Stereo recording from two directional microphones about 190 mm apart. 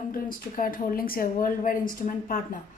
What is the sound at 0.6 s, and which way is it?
A woman's voice, 50° left (ahead or behind).